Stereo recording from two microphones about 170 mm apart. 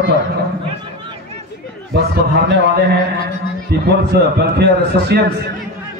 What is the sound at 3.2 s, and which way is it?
A man's voice, 70° right (ahead or behind).